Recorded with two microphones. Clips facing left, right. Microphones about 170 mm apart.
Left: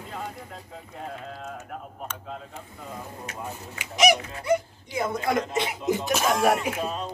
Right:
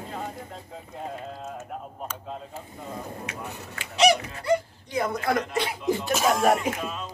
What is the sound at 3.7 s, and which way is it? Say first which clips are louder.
Speech: right 1 dB; 15° left (ahead or behind).